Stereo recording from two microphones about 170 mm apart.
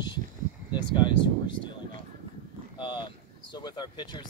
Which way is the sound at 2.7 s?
25° left (ahead or behind).